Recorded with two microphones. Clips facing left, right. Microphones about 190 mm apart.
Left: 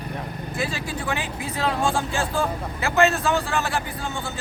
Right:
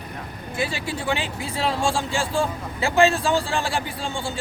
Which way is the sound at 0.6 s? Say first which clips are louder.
Right 2 dB; 25° right (ahead or behind).